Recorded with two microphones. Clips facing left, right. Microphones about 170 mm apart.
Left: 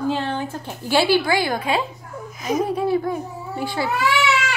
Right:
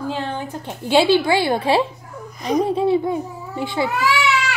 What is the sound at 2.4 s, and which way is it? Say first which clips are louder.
Speech: right 3 dB; centre (ahead or behind).